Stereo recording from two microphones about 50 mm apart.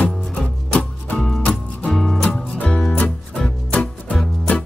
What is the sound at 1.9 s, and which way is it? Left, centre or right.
Music, centre.